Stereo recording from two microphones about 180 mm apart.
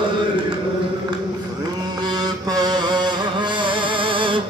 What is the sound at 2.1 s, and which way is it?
Music, 20° right (ahead or behind).